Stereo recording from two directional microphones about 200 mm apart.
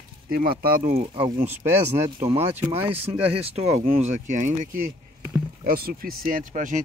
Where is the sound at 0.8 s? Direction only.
30° right (ahead or behind).